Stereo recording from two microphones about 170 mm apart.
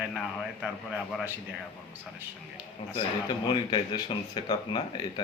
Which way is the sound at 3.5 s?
25° left (ahead or behind).